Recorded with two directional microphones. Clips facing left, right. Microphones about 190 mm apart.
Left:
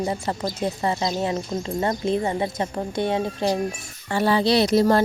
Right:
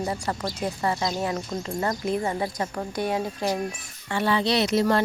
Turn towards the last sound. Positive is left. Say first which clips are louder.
# left 4 dB
turn(degrees=35)  # may be behind; listen again after turning